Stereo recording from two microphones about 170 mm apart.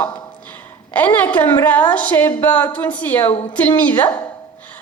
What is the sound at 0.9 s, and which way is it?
A woman's voice, 10° left (ahead or behind).